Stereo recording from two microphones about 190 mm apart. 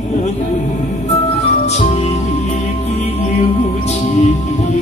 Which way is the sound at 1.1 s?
35° left (ahead or behind).